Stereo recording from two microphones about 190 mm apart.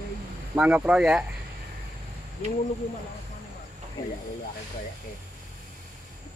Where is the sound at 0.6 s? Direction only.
10° right (ahead or behind).